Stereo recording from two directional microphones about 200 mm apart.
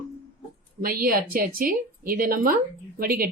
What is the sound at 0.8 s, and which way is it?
Speech, 45° right (ahead or behind).